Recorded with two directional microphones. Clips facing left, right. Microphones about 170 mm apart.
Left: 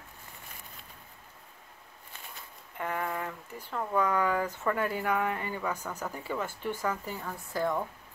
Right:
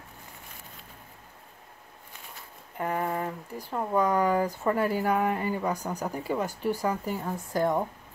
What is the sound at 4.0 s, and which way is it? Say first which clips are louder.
Speech: right 4 dB; 35° right (ahead or behind).